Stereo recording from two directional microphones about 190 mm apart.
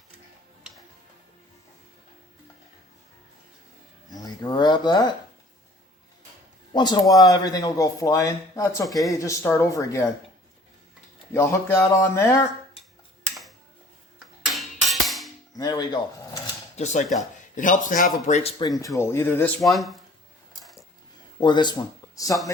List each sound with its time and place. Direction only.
4.1 s speech: 20° left (ahead or behind)
6.7 s a man's voice: 25° left (ahead or behind)
11.3 s a man's voice: 15° left (ahead or behind)
14.4 s music: centre (ahead or behind)
15.5 s speech: 20° left (ahead or behind)
16.7 s speech: 40° left (ahead or behind)
18.6 s a man's voice: 20° left (ahead or behind)
19.6 s speech: centre (ahead or behind)
20.5 s a sound: centre (ahead or behind)
21.4 s speech: 25° left (ahead or behind)